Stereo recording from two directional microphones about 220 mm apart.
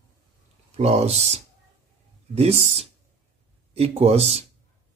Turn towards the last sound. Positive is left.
turn(degrees=-30)  # may be behind; listen again after turning